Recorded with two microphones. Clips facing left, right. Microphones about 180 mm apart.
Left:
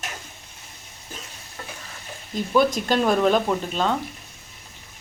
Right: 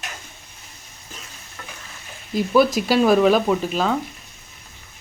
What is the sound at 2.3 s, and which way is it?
Speech, 5° right (ahead or behind).